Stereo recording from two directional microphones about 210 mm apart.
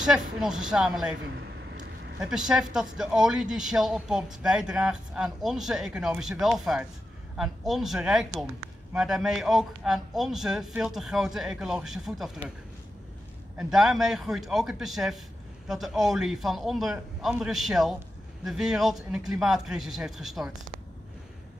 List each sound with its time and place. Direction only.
0.0 s speech: 5° right (ahead or behind)
2.2 s speech: 5° right (ahead or behind)
13.6 s speech: centre (ahead or behind)